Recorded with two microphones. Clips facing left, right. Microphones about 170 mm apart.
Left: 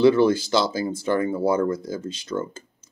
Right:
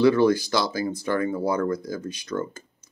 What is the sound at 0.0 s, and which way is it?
Speech, 25° left (ahead or behind).